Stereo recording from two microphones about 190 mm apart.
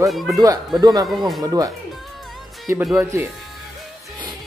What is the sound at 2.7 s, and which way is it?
Speech, 15° right (ahead or behind).